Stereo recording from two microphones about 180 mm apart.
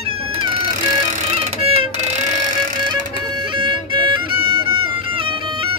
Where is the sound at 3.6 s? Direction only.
25° right (ahead or behind).